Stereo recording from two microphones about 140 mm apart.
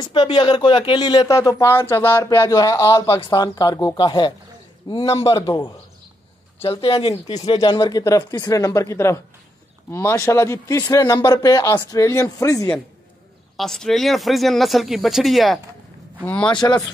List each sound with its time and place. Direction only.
0.0 s speech: 35° left (ahead or behind)
5.3 s speech: 30° left (ahead or behind)
7.7 s speech: 30° left (ahead or behind)
13.6 s speech: 5° left (ahead or behind)
16.6 s speech: 20° left (ahead or behind)